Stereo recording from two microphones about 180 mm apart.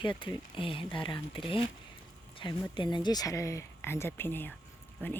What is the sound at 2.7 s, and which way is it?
Speech, 25° left (ahead or behind).